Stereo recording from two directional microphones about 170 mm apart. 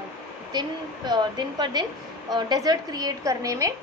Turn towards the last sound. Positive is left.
turn(degrees=-20)  # may be behind; listen again after turning